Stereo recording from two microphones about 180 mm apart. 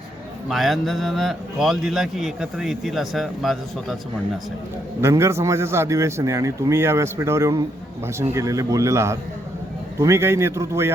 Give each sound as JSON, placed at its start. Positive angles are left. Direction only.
{"t": 0.4, "sound": "a man's voice", "side_deg": 0}
{"t": 4.9, "sound": "a man's voice", "side_deg": -15}